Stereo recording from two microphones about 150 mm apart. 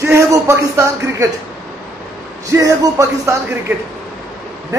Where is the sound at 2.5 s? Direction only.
20° right (ahead or behind).